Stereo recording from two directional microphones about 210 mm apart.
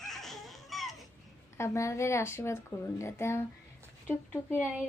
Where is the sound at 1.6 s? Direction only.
15° left (ahead or behind).